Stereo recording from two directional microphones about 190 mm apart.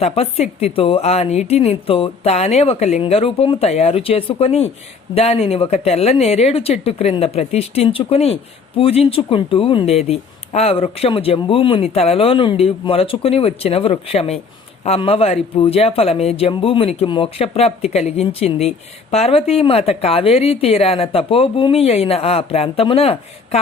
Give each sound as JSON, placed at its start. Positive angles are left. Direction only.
{"t": 0.0, "sound": "speech", "side_deg": 35}